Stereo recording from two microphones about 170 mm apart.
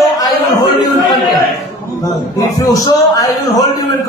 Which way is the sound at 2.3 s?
20° left (ahead or behind).